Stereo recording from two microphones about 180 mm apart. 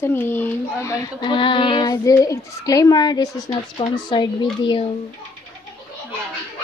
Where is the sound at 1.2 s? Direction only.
30° left (ahead or behind).